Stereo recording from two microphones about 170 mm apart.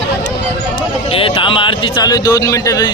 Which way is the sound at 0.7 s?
30° left (ahead or behind).